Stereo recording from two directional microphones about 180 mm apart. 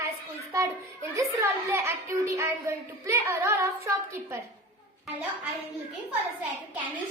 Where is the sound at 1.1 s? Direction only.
15° right (ahead or behind).